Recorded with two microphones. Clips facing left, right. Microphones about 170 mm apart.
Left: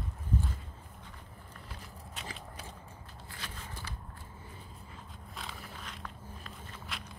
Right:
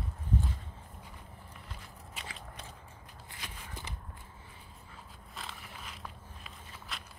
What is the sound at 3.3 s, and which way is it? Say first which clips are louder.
Walk: left 1 dB; 20° right (ahead or behind).